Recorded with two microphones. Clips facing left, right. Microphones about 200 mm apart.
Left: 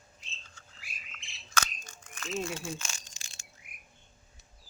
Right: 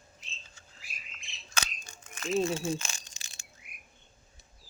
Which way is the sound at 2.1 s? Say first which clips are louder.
Right 7 dB; 35° right (ahead or behind).